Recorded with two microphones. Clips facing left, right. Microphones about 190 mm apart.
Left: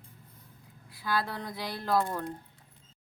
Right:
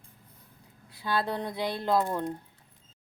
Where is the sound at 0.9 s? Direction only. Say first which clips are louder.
Right 3 dB; 25° right (ahead or behind).